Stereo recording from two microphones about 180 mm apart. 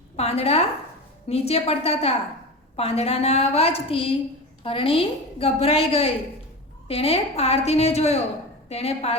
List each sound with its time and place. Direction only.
0.2 s a woman's voice: 35° left (ahead or behind)